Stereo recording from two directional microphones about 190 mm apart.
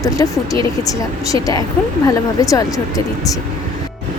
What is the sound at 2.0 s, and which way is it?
A woman's voice, 20° left (ahead or behind).